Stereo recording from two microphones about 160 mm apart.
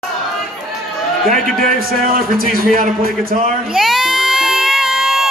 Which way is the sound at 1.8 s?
65° right (ahead or behind).